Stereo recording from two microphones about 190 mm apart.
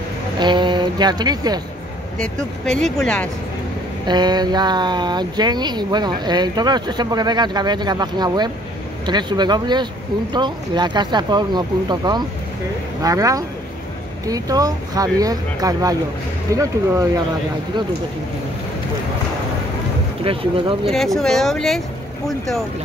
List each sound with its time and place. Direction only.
0.4 s speech: 25° right (ahead or behind)
2.1 s speech: 5° left (ahead or behind)
4.1 s speech: 20° right (ahead or behind)
20.2 s speech: 30° right (ahead or behind)
20.9 s speech: centre (ahead or behind)